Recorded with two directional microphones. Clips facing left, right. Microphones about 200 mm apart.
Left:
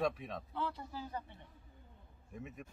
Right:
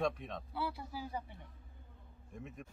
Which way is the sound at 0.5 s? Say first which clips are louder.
Right 1 dB; 10° right (ahead or behind).